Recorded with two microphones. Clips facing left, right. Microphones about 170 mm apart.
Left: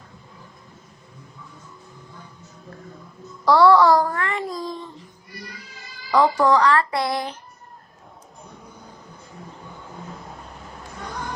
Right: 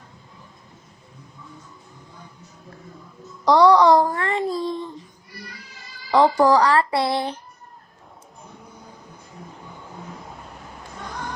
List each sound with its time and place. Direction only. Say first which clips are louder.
3.4 s a child's voice: even; 20° right (ahead or behind)
6.1 s speech: right 2 dB; 30° right (ahead or behind)